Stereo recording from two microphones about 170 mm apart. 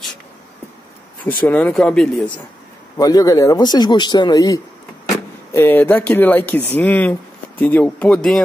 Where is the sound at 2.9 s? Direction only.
20° left (ahead or behind).